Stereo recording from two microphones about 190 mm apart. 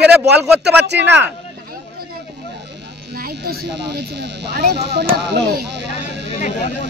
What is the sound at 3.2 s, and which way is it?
Speech, 60° right (ahead or behind).